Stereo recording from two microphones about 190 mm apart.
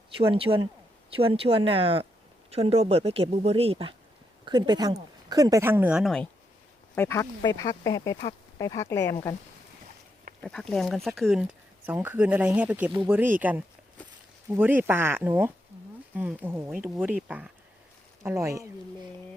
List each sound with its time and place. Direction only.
0.2 s speech: 30° right (ahead or behind); by 6.2 s centre (ahead or behind)
6.9 s speech: 15° left (ahead or behind)
10.4 s speech: 5° left (ahead or behind)
14.5 s speech: 10° right (ahead or behind)